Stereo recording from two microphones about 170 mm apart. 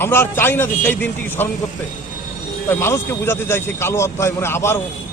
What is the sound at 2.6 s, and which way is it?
A man's voice, 15° left (ahead or behind).